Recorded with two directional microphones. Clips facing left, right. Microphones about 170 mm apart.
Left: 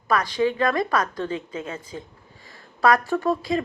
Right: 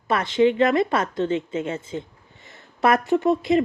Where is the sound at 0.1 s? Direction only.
25° right (ahead or behind).